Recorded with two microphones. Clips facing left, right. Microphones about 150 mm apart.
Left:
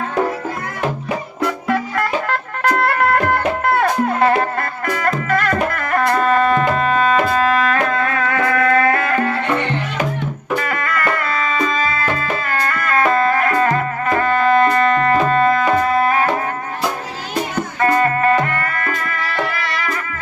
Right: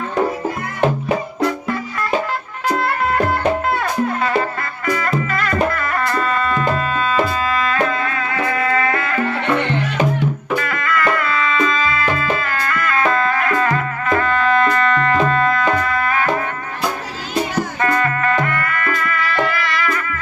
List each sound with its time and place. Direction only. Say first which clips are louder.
1.6 s music: left 4 dB; 75° left (ahead or behind); by 9.4 s 50° left (ahead or behind)
10.6 s music: right 1 dB; 40° left (ahead or behind)
17.8 s music: left 5 dB; 35° left (ahead or behind)